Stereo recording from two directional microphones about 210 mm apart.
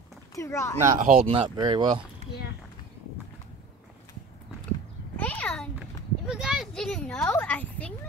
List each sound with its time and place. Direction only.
0.3 s speech: 15° left (ahead or behind)
0.9 s speech: 40° right (ahead or behind)
1.2 s speech: 25° right (ahead or behind)
5.1 s a child's voice: 5° left (ahead or behind)